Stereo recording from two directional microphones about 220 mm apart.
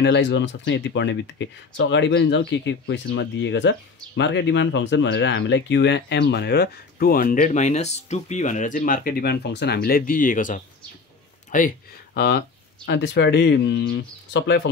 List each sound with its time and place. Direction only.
0.0 s speech: 55° left (ahead or behind)
9.8 s speech: 40° left (ahead or behind)